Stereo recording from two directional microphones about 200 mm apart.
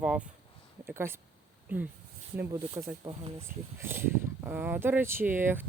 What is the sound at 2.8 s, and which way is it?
Speech, 25° right (ahead or behind).